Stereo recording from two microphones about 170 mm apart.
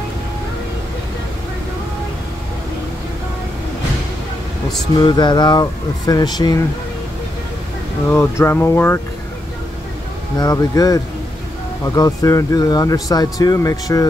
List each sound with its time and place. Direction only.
4.9 s speech: 25° left (ahead or behind)
8.1 s speech: 15° left (ahead or behind)
10.4 s speech: 20° left (ahead or behind)